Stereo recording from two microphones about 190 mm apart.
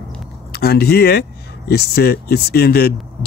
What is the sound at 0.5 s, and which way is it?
Speech, 55° left (ahead or behind).